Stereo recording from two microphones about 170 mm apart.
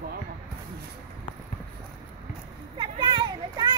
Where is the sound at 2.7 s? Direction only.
25° right (ahead or behind).